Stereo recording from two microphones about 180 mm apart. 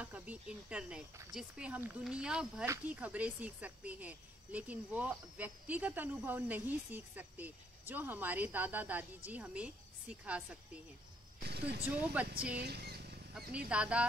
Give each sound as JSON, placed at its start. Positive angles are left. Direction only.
{"t": 0.0, "sound": "speech", "side_deg": -10}
{"t": 11.4, "sound": "vehicle", "side_deg": -65}
{"t": 11.8, "sound": "speech", "side_deg": -10}
{"t": 12.6, "sound": "vehicle", "side_deg": -60}
{"t": 13.3, "sound": "speech", "side_deg": -5}